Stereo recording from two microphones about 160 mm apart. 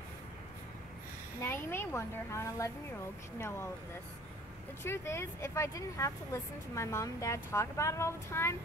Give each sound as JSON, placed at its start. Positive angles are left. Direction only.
{"t": 1.4, "sound": "speech", "side_deg": 15}
{"t": 4.8, "sound": "speech", "side_deg": 15}